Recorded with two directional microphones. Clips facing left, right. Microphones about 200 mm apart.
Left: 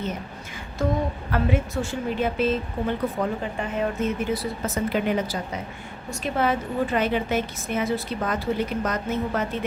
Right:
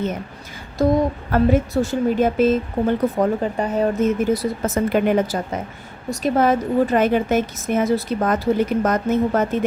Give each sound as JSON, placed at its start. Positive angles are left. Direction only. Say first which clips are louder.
{"t": 0.8, "sound": "a woman's voice", "louder": "right 8 dB", "side_deg": -40}